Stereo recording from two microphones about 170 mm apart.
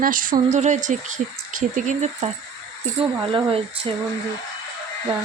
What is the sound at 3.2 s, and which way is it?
Speech, 30° right (ahead or behind).